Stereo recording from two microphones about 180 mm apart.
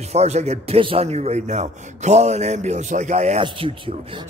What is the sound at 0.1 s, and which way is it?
A man's voice, 35° right (ahead or behind).